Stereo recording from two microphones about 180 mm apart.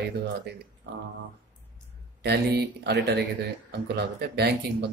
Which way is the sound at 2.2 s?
65° right (ahead or behind).